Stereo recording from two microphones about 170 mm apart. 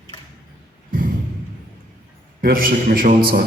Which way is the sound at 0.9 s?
55° right (ahead or behind).